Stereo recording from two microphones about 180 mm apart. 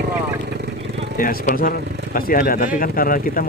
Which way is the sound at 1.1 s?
50° left (ahead or behind).